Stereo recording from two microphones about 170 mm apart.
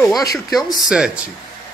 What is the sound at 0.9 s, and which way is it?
Speech, 5° right (ahead or behind).